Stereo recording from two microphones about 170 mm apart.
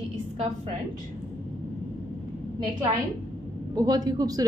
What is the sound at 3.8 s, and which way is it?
Speech, 20° right (ahead or behind).